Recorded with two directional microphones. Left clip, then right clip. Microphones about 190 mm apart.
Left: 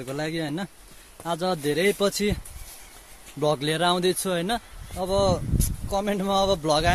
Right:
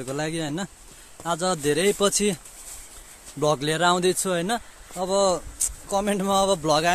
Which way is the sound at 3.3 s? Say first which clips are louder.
Right 1 dB; 5° right (ahead or behind).